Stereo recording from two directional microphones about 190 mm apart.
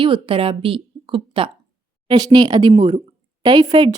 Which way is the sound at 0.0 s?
25° right (ahead or behind).